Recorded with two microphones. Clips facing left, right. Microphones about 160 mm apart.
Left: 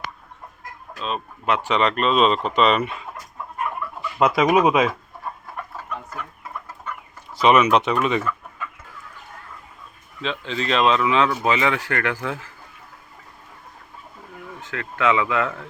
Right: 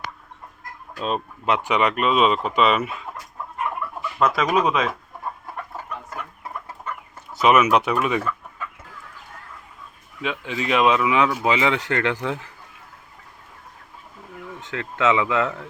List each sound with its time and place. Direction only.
1.5 s speech: 15° right (ahead or behind)
4.2 s speech: 10° left (ahead or behind)
7.4 s speech: 5° right (ahead or behind)
10.2 s speech: 10° right (ahead or behind)
14.6 s speech: 20° right (ahead or behind)